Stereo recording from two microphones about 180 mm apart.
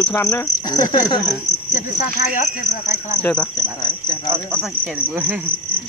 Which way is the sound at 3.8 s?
25° left (ahead or behind).